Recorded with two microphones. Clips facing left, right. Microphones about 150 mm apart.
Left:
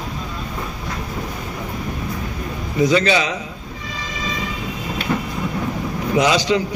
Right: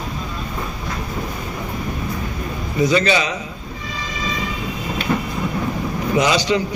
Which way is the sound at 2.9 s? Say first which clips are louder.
Even; 90° left.